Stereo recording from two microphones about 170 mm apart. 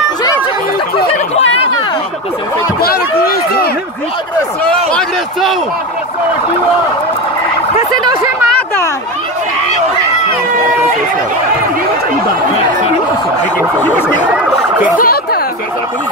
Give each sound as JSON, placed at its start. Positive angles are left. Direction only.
{"t": 0.9, "sound": "a sound", "side_deg": 35}
{"t": 2.8, "sound": "speech", "side_deg": 60}
{"t": 4.9, "sound": "a man's voice", "side_deg": 0}
{"t": 15.0, "sound": "speech", "side_deg": 60}